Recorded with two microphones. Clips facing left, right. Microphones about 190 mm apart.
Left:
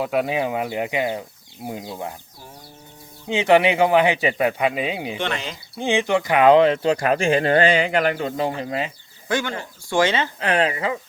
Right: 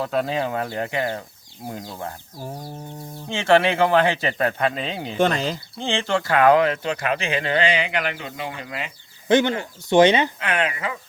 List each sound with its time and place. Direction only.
0.0 s speech: 10° left (ahead or behind)
3.2 s speech: 15° left (ahead or behind)
5.1 s speech: 40° right (ahead or behind)
5.7 s speech: 15° left (ahead or behind)
6.9 s speech: 40° left (ahead or behind)
9.3 s speech: 20° right (ahead or behind)
10.4 s speech: 35° left (ahead or behind)